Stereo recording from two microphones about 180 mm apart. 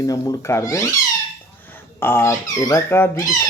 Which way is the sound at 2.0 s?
15° left (ahead or behind).